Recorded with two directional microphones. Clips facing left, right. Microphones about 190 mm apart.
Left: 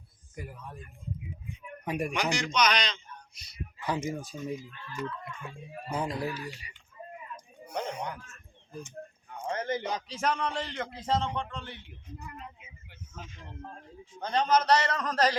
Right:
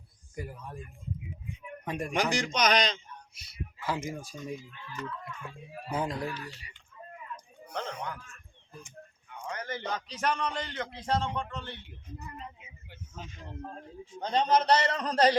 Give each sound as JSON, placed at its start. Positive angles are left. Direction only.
{"t": 0.3, "sound": "a man's voice", "side_deg": 0}
{"t": 1.8, "sound": "speech", "side_deg": 10}
{"t": 2.4, "sound": "a man's voice", "side_deg": -50}
{"t": 3.3, "sound": "a man's voice", "side_deg": -5}
{"t": 3.8, "sound": "speech", "side_deg": 15}
{"t": 4.4, "sound": "speech", "side_deg": 5}
{"t": 4.7, "sound": "speech", "side_deg": -15}
{"t": 5.0, "sound": "a man's voice", "side_deg": 0}
{"t": 7.3, "sound": "a sound", "side_deg": 10}
{"t": 9.4, "sound": "a sound", "side_deg": 35}
{"t": 9.6, "sound": "a man's voice", "side_deg": 15}
{"t": 14.3, "sound": "a man's voice", "side_deg": -25}